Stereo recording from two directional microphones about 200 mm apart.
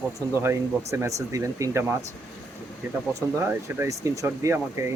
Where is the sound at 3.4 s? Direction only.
10° right (ahead or behind).